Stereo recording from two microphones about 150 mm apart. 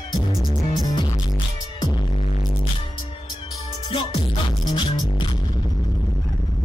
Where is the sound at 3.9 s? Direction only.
40° left (ahead or behind).